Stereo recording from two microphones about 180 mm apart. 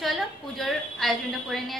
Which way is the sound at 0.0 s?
Centre (ahead or behind).